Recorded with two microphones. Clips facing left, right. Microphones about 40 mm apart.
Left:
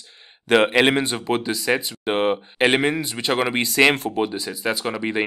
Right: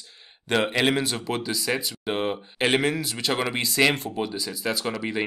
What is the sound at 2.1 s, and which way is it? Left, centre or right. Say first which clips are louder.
Speech: left 6 dB; left.